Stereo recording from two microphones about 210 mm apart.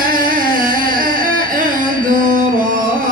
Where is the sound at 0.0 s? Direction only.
40° right (ahead or behind).